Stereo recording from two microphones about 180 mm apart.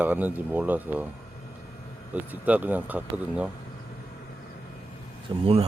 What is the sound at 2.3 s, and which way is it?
Speech, 10° right (ahead or behind).